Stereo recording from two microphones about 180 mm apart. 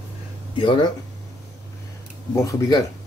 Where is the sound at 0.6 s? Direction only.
30° left (ahead or behind).